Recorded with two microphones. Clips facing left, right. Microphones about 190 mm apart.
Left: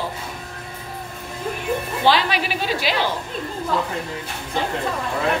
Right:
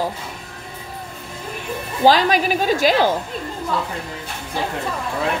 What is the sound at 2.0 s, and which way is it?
A woman's voice, 45° right (ahead or behind).